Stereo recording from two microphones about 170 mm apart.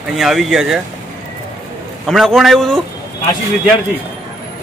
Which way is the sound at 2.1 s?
Centre (ahead or behind).